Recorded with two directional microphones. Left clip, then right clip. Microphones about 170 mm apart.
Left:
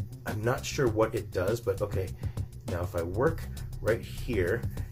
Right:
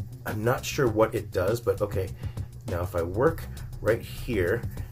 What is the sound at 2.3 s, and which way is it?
Music, centre (ahead or behind).